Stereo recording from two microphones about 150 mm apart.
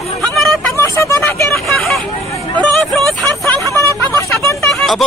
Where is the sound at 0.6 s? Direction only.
20° left (ahead or behind).